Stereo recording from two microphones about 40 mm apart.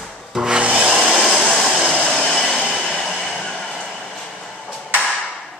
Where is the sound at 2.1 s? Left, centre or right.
Centre.